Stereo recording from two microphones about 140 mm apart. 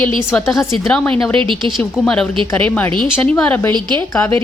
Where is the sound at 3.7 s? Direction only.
30° right (ahead or behind).